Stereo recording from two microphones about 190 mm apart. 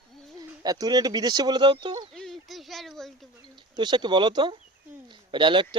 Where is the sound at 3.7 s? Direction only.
25° right (ahead or behind).